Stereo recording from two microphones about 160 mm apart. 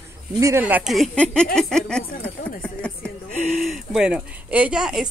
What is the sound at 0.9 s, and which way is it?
Speech, 5° left (ahead or behind).